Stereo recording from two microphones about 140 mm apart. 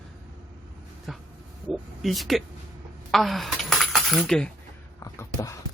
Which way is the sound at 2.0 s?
Centre (ahead or behind).